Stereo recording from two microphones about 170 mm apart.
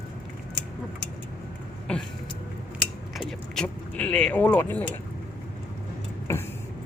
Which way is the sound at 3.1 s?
5° left (ahead or behind).